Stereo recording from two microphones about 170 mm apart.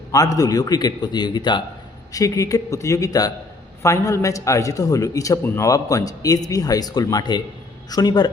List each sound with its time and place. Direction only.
0.3 s a man's voice: 20° left (ahead or behind)